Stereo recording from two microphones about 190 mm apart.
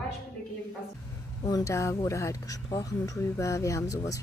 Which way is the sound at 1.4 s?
15° left (ahead or behind).